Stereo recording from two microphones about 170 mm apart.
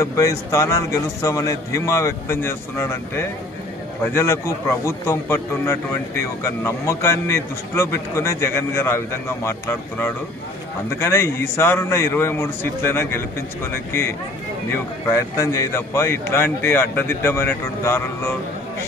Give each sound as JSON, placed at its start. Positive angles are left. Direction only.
{"t": 0.0, "sound": "a man's voice", "side_deg": 20}
{"t": 15.0, "sound": "a man's voice", "side_deg": 15}